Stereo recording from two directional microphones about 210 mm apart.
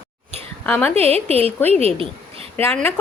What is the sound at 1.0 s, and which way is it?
Speech, 30° right (ahead or behind).